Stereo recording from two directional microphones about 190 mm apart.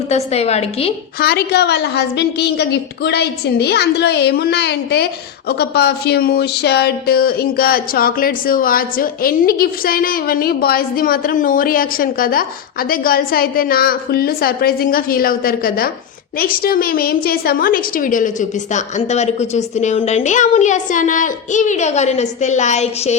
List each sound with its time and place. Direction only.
0.1 s a woman's voice: 35° left (ahead or behind)
1.2 s a woman's voice: 55° left (ahead or behind); by 23.1 s 35° left (ahead or behind)